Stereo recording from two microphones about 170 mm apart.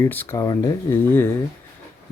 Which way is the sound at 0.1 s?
10° left (ahead or behind).